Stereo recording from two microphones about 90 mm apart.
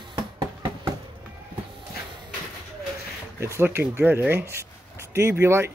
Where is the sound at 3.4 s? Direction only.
30° right (ahead or behind).